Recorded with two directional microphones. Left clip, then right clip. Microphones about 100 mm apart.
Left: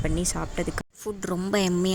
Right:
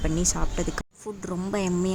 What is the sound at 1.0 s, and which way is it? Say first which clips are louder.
Speech: left 5 dB; 35° left (ahead or behind).